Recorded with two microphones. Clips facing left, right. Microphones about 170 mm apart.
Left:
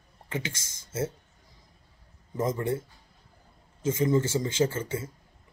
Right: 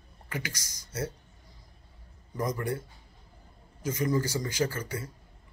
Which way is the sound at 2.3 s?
25° left (ahead or behind).